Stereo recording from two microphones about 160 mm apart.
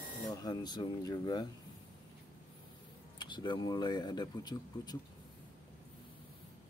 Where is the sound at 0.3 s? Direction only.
25° left (ahead or behind).